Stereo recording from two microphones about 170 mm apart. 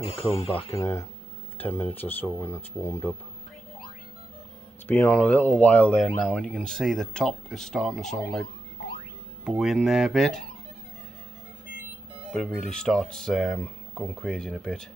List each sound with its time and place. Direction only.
0.0 s speech: 35° left (ahead or behind)
0.7 s speech: 15° left (ahead or behind)
4.8 s speech: 10° left (ahead or behind)
12.3 s speech: centre (ahead or behind)